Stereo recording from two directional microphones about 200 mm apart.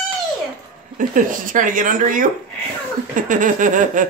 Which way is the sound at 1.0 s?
40° right (ahead or behind).